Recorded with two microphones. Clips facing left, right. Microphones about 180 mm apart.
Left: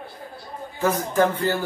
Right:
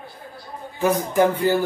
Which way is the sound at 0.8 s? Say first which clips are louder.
Right 2 dB; 15° right (ahead or behind).